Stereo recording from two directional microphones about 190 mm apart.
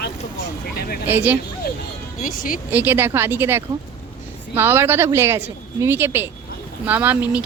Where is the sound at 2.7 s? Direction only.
10° right (ahead or behind).